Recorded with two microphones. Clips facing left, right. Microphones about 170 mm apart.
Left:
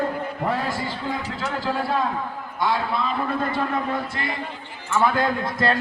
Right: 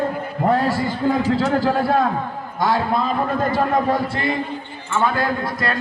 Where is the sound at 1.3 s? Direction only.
40° right (ahead or behind).